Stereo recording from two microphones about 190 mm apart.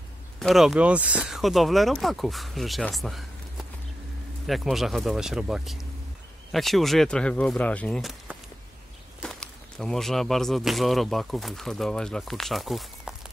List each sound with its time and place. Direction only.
0.4 s speech: centre (ahead or behind)
9.2 s speech: 5° left (ahead or behind)